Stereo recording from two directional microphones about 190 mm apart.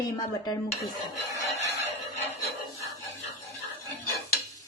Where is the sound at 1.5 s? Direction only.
35° left (ahead or behind).